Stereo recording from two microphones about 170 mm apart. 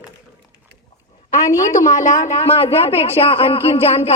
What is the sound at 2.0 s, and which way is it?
A man's voice, 45° left (ahead or behind).